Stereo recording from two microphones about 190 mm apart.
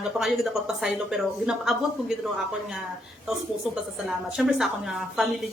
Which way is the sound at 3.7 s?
5° right (ahead or behind).